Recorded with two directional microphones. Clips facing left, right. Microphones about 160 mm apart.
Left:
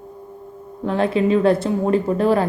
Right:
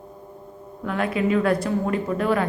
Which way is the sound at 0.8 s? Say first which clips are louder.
Left 5 dB; 30° left (ahead or behind).